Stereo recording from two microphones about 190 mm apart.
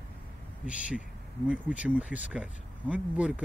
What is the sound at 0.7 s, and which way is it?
Speech, 5° right (ahead or behind).